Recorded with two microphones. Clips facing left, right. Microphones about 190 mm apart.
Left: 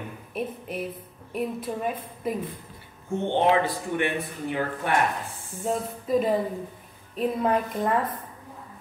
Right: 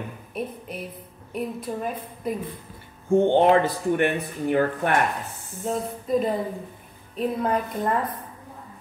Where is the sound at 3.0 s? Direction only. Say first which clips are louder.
Right 6 dB; 45° right (ahead or behind).